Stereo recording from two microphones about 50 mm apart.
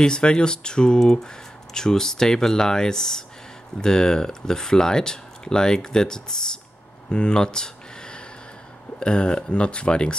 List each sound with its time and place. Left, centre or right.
0.0 s speech: centre
7.1 s a sound: centre
9.0 s speech: centre